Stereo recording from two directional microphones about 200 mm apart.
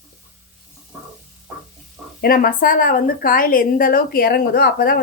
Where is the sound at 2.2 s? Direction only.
45° left (ahead or behind).